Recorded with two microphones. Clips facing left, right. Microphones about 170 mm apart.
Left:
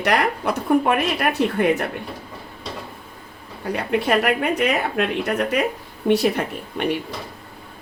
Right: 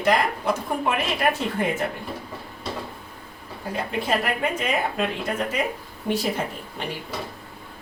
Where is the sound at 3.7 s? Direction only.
70° left (ahead or behind).